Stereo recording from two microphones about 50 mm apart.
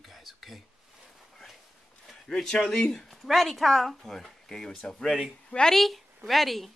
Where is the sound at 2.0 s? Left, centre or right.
Centre.